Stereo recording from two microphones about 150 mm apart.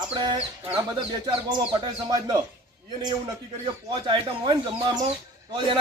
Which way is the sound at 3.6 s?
35° right (ahead or behind).